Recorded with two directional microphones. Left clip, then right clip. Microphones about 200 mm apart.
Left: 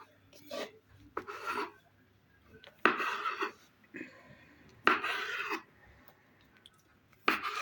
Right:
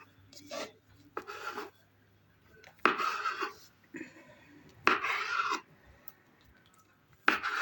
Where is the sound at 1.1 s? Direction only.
5° left (ahead or behind).